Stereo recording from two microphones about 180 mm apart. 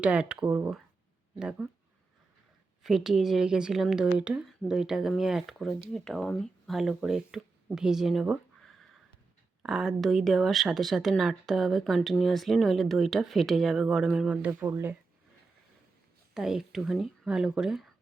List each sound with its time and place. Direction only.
0.0 s speech: 5° right (ahead or behind)
2.8 s speech: centre (ahead or behind)
16.3 s speech: 5° right (ahead or behind)